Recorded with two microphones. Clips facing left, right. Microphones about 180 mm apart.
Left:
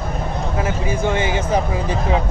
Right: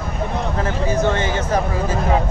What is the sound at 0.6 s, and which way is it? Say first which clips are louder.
Speech: right 1 dB; 10° left (ahead or behind).